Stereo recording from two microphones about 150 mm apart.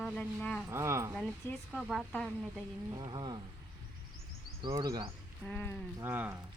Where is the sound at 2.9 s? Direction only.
30° right (ahead or behind).